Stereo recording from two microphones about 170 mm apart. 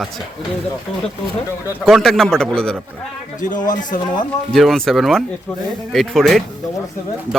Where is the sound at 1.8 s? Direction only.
Centre (ahead or behind).